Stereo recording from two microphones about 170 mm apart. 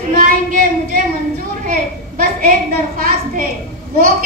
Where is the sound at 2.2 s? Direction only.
55° right (ahead or behind).